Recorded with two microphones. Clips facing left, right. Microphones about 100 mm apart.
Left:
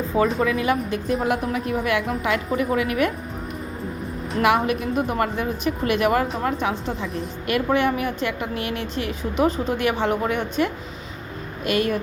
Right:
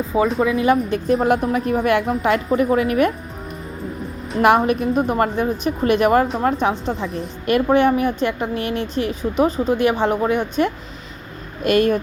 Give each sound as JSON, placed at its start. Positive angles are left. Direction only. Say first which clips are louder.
{"t": 0.1, "sound": "speech", "louder": "right 2 dB", "side_deg": -5}
{"t": 0.4, "sound": "a woman's voice", "louder": "right 5 dB", "side_deg": -30}
{"t": 4.4, "sound": "a woman's voice", "louder": "right 5 dB", "side_deg": -40}
{"t": 11.6, "sound": "a woman's voice", "louder": "right 6 dB", "side_deg": -40}